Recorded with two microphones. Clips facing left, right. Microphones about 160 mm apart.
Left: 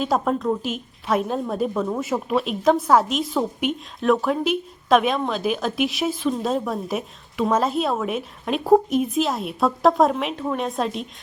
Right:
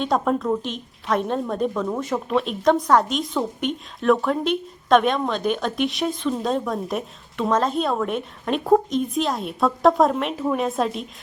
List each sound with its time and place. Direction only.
0.0 s a woman's voice: 5° left (ahead or behind)